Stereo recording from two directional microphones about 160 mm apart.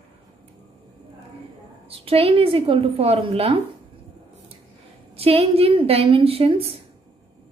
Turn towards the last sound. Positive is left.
turn(degrees=-35)  # may be behind; listen again after turning